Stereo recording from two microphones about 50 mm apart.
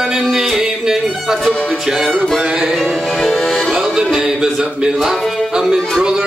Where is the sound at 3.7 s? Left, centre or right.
Centre.